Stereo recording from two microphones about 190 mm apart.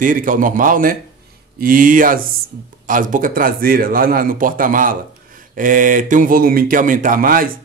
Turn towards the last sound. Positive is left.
turn(degrees=-50)  # may be behind; listen again after turning